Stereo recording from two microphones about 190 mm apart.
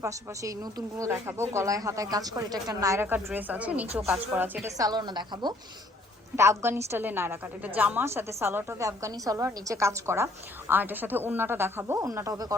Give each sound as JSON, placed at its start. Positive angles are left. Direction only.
{"t": 0.0, "sound": "a woman's voice", "side_deg": -15}